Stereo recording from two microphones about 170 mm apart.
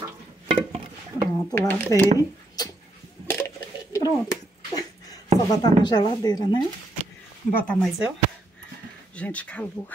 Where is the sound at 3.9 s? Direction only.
20° left (ahead or behind).